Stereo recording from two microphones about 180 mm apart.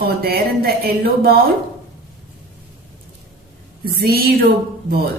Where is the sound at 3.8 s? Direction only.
60° right (ahead or behind).